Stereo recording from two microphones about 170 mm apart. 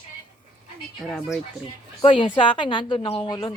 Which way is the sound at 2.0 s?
30° left (ahead or behind).